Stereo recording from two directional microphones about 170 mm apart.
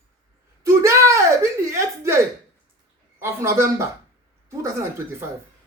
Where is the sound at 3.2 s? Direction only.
15° right (ahead or behind).